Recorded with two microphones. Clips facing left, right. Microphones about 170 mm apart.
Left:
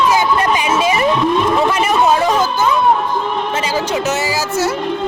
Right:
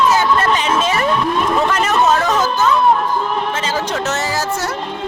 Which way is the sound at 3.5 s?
10° left (ahead or behind).